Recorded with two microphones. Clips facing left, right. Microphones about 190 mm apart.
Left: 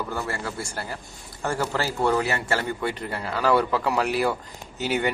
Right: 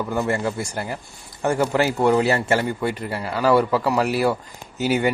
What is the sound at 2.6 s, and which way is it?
Speech, 10° right (ahead or behind).